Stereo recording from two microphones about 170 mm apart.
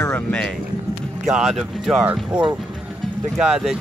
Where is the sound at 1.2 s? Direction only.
5° right (ahead or behind).